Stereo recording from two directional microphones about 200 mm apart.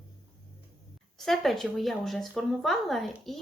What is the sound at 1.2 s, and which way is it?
Speech, centre (ahead or behind).